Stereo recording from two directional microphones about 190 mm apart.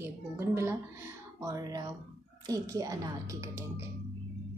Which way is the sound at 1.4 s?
20° right (ahead or behind).